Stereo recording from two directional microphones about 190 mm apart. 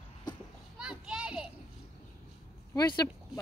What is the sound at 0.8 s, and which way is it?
Children playing, 5° right (ahead or behind).